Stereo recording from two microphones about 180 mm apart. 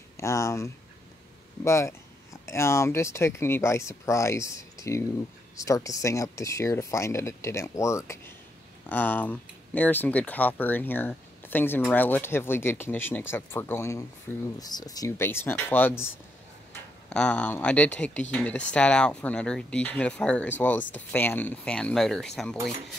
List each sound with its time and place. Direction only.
0.2 s speech: 15° left (ahead or behind)
17.1 s speech: 5° left (ahead or behind)